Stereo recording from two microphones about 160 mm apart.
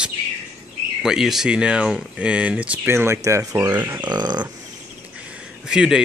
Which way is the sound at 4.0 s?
25° right (ahead or behind).